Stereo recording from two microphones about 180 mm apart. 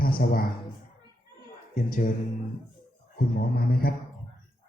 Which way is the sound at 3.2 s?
60° left (ahead or behind).